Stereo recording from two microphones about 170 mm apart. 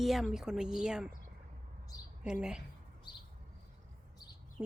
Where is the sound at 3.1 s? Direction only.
25° left (ahead or behind).